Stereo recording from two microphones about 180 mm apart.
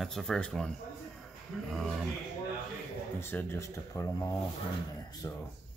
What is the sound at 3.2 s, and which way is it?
Speech, 15° left (ahead or behind).